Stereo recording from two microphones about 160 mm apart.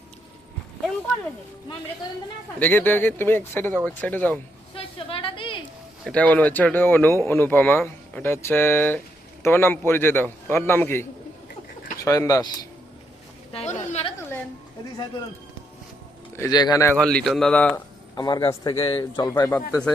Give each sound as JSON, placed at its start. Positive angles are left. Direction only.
{"t": 2.6, "sound": "speech", "side_deg": 10}
{"t": 4.7, "sound": "a sound", "side_deg": 35}
{"t": 6.1, "sound": "speech", "side_deg": 10}
{"t": 12.0, "sound": "a man's voice", "side_deg": 20}
{"t": 13.5, "sound": "a sound", "side_deg": 45}
{"t": 16.3, "sound": "a man's voice", "side_deg": 20}
{"t": 17.0, "sound": "speech", "side_deg": 5}
{"t": 18.1, "sound": "a man's voice", "side_deg": 25}
{"t": 19.3, "sound": "speech", "side_deg": 20}